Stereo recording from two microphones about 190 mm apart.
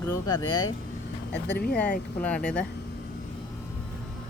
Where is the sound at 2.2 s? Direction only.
5° left (ahead or behind).